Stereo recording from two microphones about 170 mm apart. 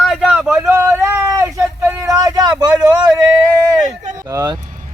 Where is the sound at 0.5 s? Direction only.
15° right (ahead or behind).